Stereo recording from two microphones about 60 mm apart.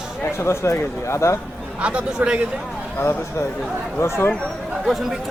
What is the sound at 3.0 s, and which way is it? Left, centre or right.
Speech, left.